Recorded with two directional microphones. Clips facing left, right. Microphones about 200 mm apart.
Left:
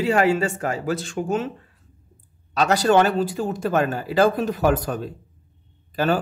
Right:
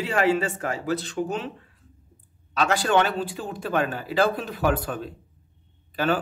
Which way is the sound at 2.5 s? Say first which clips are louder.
Left 4 dB; 40° left (ahead or behind).